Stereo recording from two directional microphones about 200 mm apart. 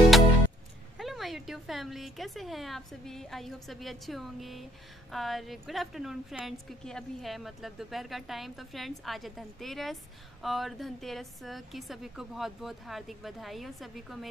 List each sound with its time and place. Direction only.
0.9 s a woman's voice: centre (ahead or behind)